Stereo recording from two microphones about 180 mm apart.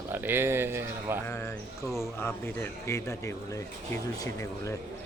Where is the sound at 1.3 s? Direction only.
15° left (ahead or behind).